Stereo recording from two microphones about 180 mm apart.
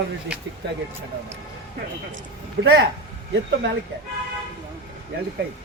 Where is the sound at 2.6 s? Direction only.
65° right (ahead or behind).